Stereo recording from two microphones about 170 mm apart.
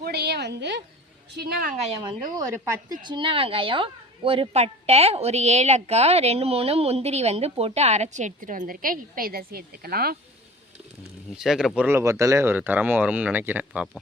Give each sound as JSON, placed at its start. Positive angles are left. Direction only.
{"t": 0.0, "sound": "a sound", "side_deg": -70}
{"t": 1.4, "sound": "a woman's voice", "side_deg": -65}
{"t": 2.3, "sound": "speech", "side_deg": -20}
{"t": 11.3, "sound": "speech", "side_deg": 0}
{"t": 11.8, "sound": "speech", "side_deg": -15}